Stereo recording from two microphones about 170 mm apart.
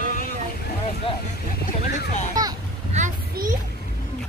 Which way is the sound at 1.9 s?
45° left (ahead or behind).